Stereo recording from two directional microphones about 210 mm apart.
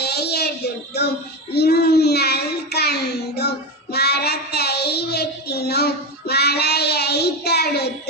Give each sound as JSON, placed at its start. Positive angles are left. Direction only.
{"t": 0.0, "sound": "speech", "side_deg": 50}
{"t": 1.5, "sound": "child singing", "side_deg": 50}